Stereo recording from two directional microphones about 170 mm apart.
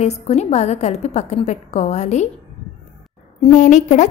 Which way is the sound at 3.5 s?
45° left (ahead or behind).